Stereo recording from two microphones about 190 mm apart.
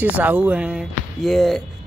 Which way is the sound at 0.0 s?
10° right (ahead or behind).